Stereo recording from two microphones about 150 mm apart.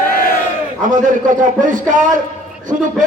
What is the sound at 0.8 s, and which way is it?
A man's voice, 60° right (ahead or behind).